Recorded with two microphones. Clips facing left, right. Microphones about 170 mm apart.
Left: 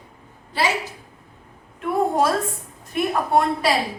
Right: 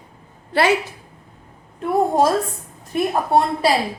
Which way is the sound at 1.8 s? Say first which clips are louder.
Right 3 dB; 30° right (ahead or behind).